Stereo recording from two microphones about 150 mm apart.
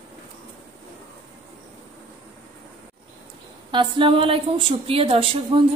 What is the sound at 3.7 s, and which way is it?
A woman's voice, 35° right (ahead or behind).